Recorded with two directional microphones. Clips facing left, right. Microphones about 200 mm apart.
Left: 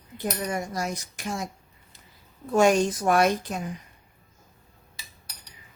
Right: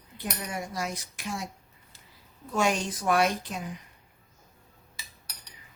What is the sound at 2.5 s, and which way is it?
Speech, 45° left (ahead or behind).